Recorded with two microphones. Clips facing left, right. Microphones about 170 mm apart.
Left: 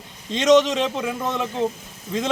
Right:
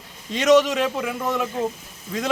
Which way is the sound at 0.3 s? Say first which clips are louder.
Even; 20° left (ahead or behind).